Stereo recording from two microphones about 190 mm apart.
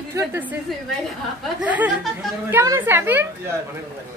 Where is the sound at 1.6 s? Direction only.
10° right (ahead or behind).